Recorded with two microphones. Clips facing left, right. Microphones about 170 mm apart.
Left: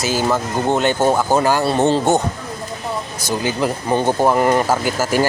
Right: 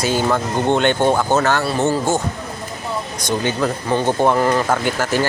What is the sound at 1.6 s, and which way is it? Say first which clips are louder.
Speech: left 3 dB; 25° left (ahead or behind).